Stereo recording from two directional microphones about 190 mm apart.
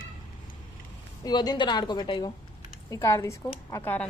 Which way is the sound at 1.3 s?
20° left (ahead or behind).